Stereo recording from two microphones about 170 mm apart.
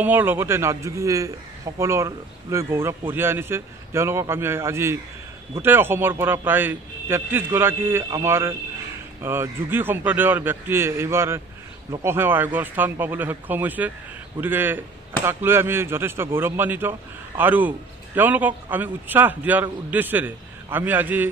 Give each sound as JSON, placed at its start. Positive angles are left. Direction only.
{"t": 0.0, "sound": "a man's voice", "side_deg": -10}